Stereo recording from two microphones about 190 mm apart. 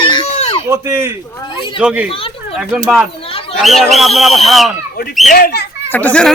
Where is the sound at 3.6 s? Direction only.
Centre (ahead or behind).